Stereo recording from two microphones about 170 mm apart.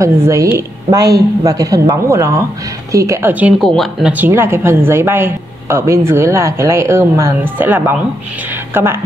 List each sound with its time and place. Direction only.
0.0 s speech: 20° right (ahead or behind)
3.6 s speech: centre (ahead or behind)
4.1 s speech: 10° right (ahead or behind)